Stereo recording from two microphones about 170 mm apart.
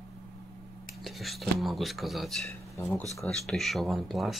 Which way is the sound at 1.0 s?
Centre (ahead or behind).